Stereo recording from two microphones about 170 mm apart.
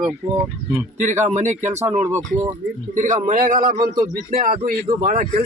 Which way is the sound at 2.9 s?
50° right (ahead or behind).